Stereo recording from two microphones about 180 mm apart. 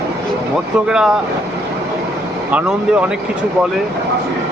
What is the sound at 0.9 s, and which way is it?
Speech, 5° right (ahead or behind).